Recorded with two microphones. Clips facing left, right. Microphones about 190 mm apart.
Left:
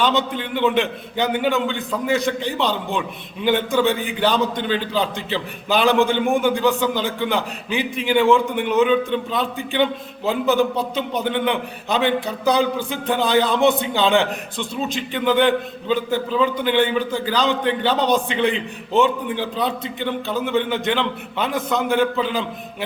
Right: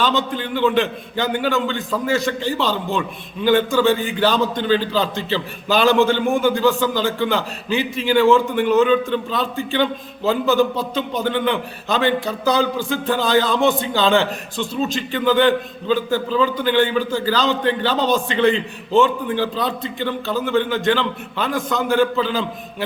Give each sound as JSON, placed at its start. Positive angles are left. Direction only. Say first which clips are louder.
{"t": 0.0, "sound": "a man's voice", "louder": "even", "side_deg": 20}